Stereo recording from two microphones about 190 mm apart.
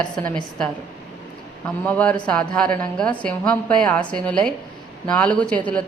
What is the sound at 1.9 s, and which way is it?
A woman's voice, 5° left (ahead or behind).